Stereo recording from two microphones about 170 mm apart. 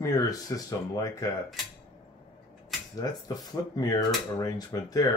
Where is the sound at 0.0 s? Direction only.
20° left (ahead or behind).